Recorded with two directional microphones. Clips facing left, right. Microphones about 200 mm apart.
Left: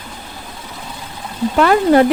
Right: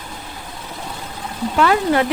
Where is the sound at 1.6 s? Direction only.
45° left (ahead or behind).